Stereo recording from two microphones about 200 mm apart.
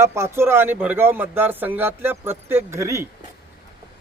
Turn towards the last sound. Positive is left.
turn(degrees=-15)  # may be behind; listen again after turning